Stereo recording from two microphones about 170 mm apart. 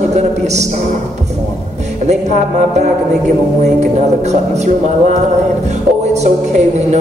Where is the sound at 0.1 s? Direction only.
40° right (ahead or behind).